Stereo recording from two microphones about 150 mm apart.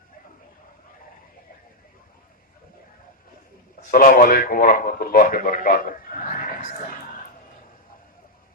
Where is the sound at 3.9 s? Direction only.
65° left (ahead or behind).